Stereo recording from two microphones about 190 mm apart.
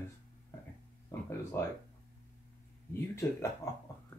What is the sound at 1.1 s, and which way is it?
Speech, 15° left (ahead or behind).